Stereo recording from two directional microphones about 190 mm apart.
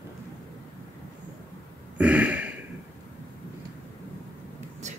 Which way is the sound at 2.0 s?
5° right (ahead or behind).